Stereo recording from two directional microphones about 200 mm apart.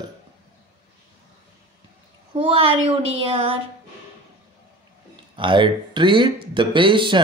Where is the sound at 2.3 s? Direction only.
25° right (ahead or behind).